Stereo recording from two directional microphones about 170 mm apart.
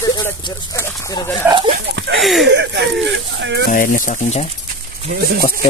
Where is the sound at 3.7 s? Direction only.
50° left (ahead or behind).